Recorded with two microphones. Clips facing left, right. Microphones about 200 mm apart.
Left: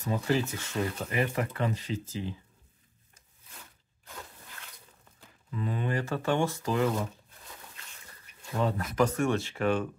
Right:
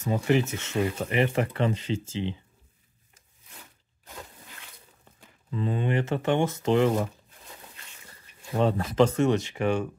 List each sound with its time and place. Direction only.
0.1 s speech: 20° right (ahead or behind)
5.5 s speech: 30° right (ahead or behind)
8.5 s speech: 25° right (ahead or behind)